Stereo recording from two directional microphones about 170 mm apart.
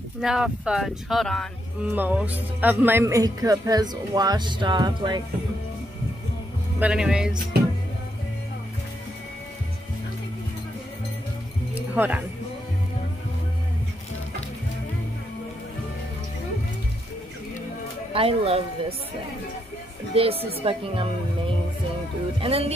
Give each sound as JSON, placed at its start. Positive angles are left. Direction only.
{"t": 0.2, "sound": "speech", "side_deg": -5}
{"t": 1.9, "sound": "speech", "side_deg": -10}
{"t": 6.8, "sound": "speech", "side_deg": -5}
{"t": 11.7, "sound": "music", "side_deg": -10}
{"t": 18.1, "sound": "speech", "side_deg": -35}
{"t": 20.1, "sound": "speech", "side_deg": -35}
{"t": 22.4, "sound": "speech", "side_deg": -35}